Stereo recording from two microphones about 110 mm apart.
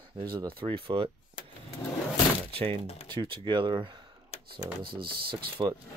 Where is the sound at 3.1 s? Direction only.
50° right (ahead or behind).